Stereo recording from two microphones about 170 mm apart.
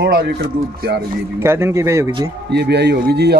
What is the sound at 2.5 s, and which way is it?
Speech, 80° right.